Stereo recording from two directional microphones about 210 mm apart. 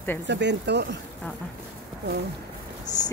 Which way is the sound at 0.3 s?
55° right (ahead or behind).